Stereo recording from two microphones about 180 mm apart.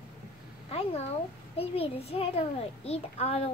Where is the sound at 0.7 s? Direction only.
35° left (ahead or behind).